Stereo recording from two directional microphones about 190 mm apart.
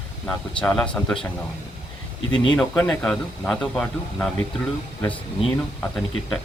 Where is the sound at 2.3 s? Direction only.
25° left (ahead or behind).